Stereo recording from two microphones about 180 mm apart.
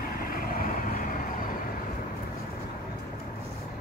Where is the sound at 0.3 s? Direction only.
50° left (ahead or behind).